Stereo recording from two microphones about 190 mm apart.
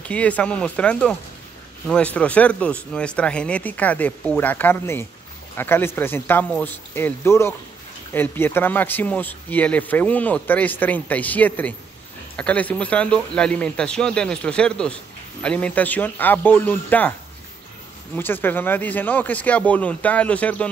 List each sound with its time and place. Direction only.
0.0 s speech: 5° left (ahead or behind)
18.1 s speech: 10° left (ahead or behind)